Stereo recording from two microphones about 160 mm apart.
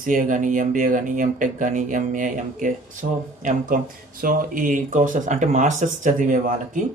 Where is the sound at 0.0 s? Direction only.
55° right (ahead or behind).